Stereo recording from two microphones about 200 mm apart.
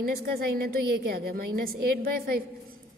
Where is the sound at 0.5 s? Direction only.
50° right (ahead or behind).